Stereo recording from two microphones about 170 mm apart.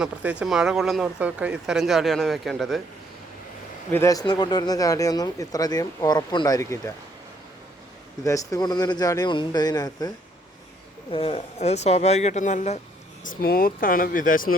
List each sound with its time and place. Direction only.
0.0 s speech: 5° right (ahead or behind)
3.9 s speech: 20° left (ahead or behind)
8.2 s speech: 20° left (ahead or behind)
11.1 s speech: 30° left (ahead or behind)
13.2 s speech: 60° left (ahead or behind)